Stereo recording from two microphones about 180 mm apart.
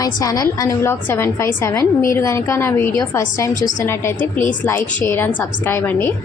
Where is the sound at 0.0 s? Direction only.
20° left (ahead or behind).